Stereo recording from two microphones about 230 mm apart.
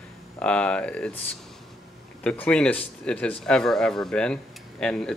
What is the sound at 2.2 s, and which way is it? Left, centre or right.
Speech, centre.